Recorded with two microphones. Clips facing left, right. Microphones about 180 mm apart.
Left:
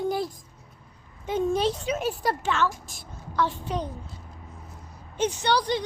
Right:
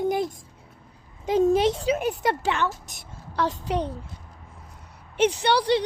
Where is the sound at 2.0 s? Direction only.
20° right (ahead or behind).